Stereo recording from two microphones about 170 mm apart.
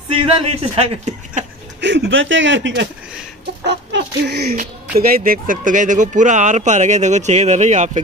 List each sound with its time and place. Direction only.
0.2 s speech: 35° right (ahead or behind)
1.8 s speech: 90° right
4.9 s speech: 60° right (ahead or behind); by 8.0 s 45° right (ahead or behind)